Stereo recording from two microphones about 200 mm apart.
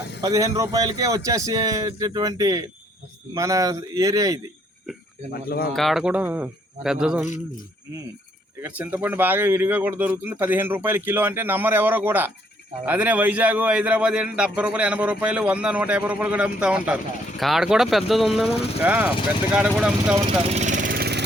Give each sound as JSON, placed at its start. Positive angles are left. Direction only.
{"t": 0.2, "sound": "speech", "side_deg": -15}
{"t": 5.3, "sound": "speech", "side_deg": 50}
{"t": 5.7, "sound": "a man's voice", "side_deg": 0}
{"t": 8.6, "sound": "a man's voice", "side_deg": -5}
{"t": 20.5, "sound": "vehicle", "side_deg": -35}